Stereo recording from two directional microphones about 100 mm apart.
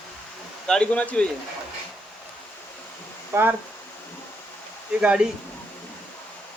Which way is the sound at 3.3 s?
20° right (ahead or behind).